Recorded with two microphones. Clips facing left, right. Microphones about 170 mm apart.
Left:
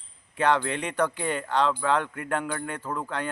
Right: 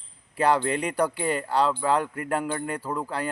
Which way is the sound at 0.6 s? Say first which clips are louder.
Right 4 dB; 35° right (ahead or behind).